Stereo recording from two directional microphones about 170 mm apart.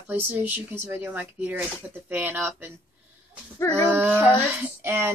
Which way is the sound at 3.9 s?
10° right (ahead or behind).